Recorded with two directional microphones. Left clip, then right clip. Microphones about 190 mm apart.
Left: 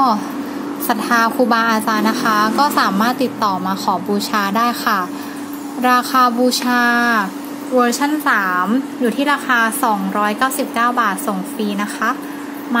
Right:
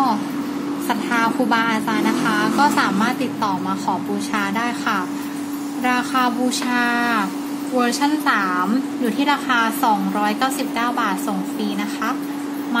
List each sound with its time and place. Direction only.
0.8 s a woman's voice: 30° left (ahead or behind)